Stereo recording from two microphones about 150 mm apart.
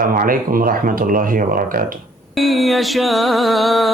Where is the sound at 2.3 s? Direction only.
Centre (ahead or behind).